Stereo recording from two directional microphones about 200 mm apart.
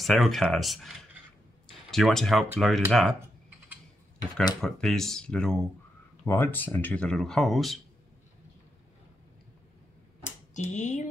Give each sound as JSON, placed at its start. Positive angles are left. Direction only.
{"t": 0.0, "sound": "speech", "side_deg": 0}
{"t": 3.2, "sound": "typing", "side_deg": -10}
{"t": 4.6, "sound": "speech", "side_deg": 5}
{"t": 10.5, "sound": "speech", "side_deg": 35}